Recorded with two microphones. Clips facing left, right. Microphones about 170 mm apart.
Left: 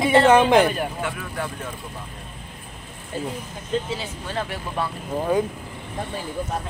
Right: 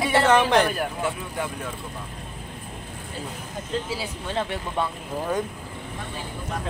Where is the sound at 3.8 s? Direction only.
5° right (ahead or behind).